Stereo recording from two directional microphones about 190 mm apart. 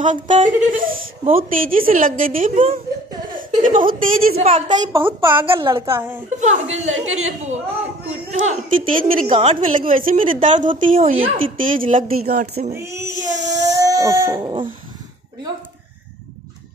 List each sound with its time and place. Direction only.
0.0 s speech: 40° right (ahead or behind)
4.5 s a woman's voice: 35° right (ahead or behind)
4.9 s a woman's voice: 10° right (ahead or behind)
5.6 s a woman's voice: 25° right (ahead or behind)
5.9 s a woman's voice: 10° right (ahead or behind)
6.4 s a woman's voice: 40° right (ahead or behind)
6.9 s a woman's voice: 90° right
8.5 s a woman's voice: 35° right (ahead or behind)
12.7 s a woman's voice: 15° right (ahead or behind)
13.1 s speech: 40° right (ahead or behind)
13.6 s dog: 20° right (ahead or behind)